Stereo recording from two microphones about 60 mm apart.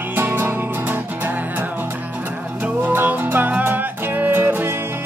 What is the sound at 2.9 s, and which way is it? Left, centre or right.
Music, right.